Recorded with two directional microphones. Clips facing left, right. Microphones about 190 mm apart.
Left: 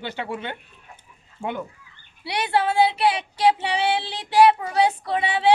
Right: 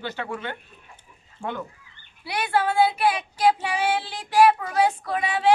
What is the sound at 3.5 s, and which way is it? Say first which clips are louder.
A man's voice: left 1 dB; 25° left (ahead or behind).